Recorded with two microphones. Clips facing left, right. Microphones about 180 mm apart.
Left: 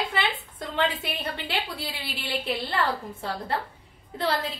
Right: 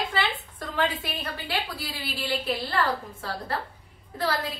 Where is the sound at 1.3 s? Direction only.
25° left (ahead or behind).